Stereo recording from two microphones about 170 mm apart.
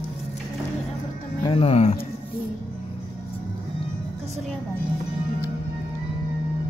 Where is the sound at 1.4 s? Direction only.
35° left (ahead or behind).